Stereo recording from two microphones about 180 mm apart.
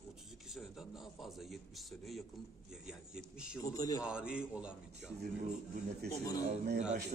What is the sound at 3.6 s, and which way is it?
Speech, 20° left (ahead or behind).